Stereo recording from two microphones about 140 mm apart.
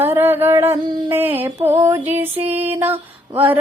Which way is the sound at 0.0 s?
15° right (ahead or behind).